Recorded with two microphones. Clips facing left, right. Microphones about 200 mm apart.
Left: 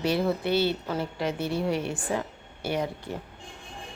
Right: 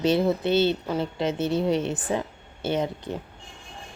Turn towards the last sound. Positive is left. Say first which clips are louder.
# right 3 dB
turn(degrees=-20)  # may be behind; listen again after turning